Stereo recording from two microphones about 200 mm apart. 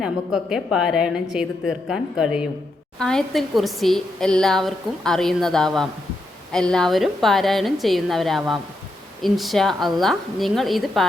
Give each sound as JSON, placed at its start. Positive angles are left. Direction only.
{"t": 0.0, "sound": "a woman's voice", "side_deg": -5}